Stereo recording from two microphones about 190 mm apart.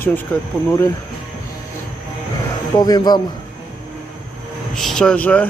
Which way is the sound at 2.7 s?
20° left (ahead or behind).